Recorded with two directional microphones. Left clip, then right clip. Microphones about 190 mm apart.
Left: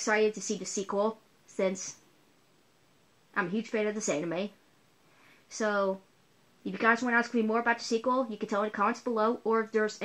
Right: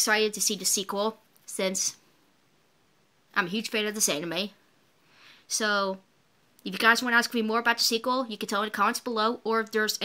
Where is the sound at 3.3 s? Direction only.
25° right (ahead or behind).